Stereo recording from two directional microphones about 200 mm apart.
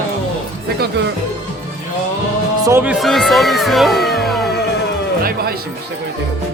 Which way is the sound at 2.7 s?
10° right (ahead or behind).